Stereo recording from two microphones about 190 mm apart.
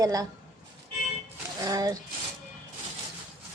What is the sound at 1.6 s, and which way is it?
Speech, 20° right (ahead or behind).